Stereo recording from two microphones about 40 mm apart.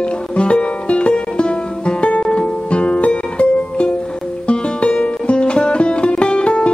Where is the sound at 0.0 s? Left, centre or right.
Left.